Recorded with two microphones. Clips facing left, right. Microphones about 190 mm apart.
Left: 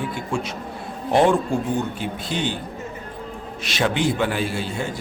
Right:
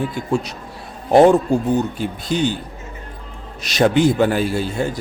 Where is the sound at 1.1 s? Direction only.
40° right (ahead or behind).